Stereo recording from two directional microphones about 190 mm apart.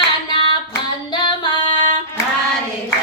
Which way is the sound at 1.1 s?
25° left (ahead or behind).